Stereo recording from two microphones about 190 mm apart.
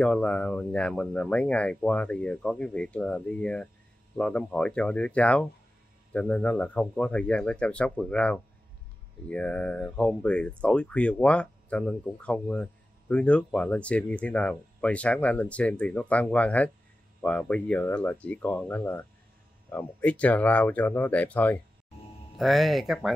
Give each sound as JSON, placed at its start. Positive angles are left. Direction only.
{"t": 0.0, "sound": "speech", "side_deg": 5}